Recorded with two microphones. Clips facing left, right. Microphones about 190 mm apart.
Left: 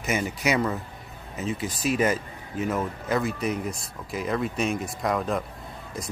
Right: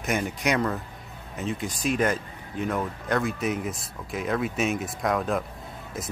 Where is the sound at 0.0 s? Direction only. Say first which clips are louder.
Even; centre (ahead or behind).